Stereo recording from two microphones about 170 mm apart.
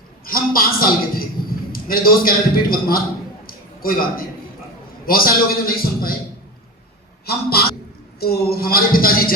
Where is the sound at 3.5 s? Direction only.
60° left (ahead or behind).